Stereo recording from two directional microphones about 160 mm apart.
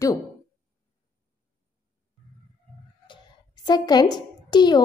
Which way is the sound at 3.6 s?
25° left (ahead or behind).